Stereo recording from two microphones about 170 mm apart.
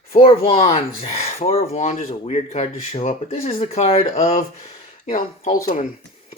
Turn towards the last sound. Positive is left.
turn(degrees=45)  # may be behind; listen again after turning